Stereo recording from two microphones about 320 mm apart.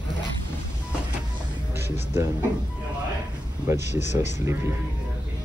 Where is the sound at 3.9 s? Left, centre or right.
Left.